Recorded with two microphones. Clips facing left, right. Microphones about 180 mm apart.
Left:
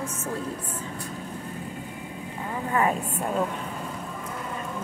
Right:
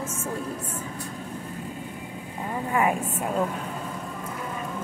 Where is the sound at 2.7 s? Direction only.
10° right (ahead or behind).